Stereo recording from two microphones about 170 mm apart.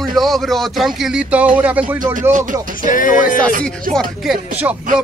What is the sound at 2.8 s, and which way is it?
Music, 50° left (ahead or behind).